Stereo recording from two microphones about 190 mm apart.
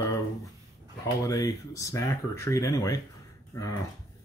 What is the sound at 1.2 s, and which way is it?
Speech, 20° left (ahead or behind).